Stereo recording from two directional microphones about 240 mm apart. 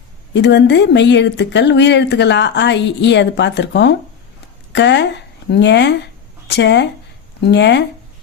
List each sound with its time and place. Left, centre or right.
0.3 s speech: left